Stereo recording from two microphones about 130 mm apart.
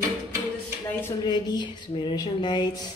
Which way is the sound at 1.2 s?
35° left (ahead or behind).